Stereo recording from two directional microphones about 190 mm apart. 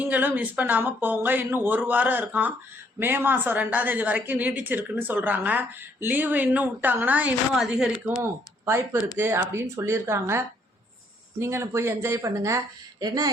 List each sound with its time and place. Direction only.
0.0 s a woman's voice: 10° right (ahead or behind)
8.2 s a woman's voice: 15° right (ahead or behind)